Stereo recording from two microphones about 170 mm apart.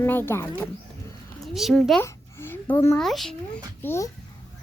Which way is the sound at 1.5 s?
Centre (ahead or behind).